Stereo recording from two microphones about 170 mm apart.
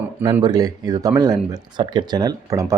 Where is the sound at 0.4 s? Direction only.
25° right (ahead or behind).